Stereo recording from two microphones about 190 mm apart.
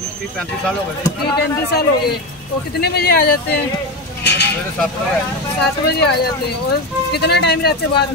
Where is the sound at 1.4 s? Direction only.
55° left (ahead or behind).